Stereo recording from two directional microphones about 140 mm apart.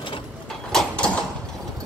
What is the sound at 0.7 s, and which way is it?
Sliding door, 5° left (ahead or behind).